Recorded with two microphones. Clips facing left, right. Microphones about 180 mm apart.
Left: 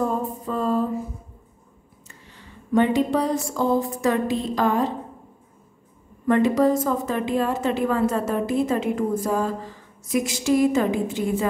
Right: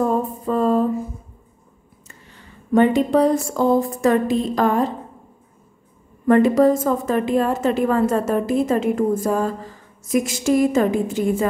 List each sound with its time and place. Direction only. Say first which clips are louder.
0.5 s a sound: right 5 dB; 55° right (ahead or behind)
2.7 s a woman's voice: right 4 dB; 50° right (ahead or behind)
6.2 s a woman's voice: right 4 dB; 50° right (ahead or behind)